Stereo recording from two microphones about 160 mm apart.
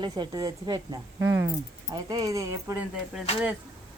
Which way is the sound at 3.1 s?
5° right (ahead or behind).